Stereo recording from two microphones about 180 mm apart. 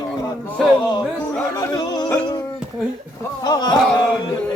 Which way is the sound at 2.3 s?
20° left (ahead or behind).